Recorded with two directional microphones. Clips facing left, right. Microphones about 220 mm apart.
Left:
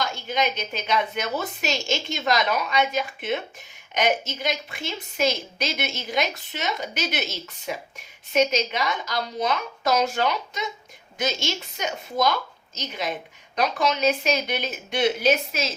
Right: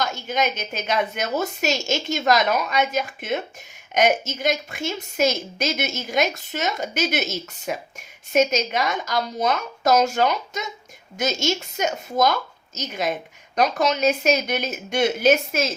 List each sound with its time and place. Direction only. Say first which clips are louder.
0.0 s a woman's voice: right 2 dB; 45° right (ahead or behind)